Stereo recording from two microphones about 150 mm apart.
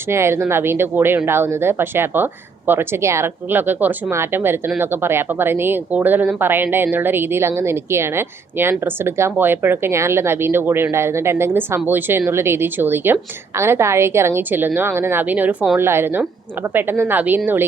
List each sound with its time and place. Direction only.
0.1 s speech: 15° right (ahead or behind)